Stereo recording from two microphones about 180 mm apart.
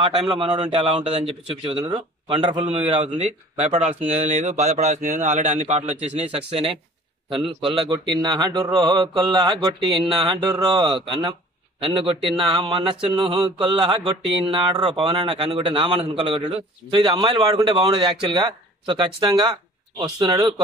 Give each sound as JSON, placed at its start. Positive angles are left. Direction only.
{"t": 0.0, "sound": "a man's voice", "side_deg": -30}
{"t": 7.6, "sound": "speech", "side_deg": -30}